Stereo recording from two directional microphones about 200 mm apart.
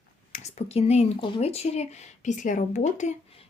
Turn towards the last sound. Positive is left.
turn(degrees=35)  # may be behind; listen again after turning